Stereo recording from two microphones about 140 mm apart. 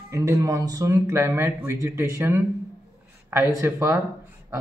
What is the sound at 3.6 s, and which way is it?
Speech, 15° right (ahead or behind).